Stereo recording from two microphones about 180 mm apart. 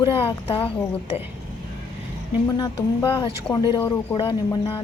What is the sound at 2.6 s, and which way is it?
Speech, 25° left (ahead or behind).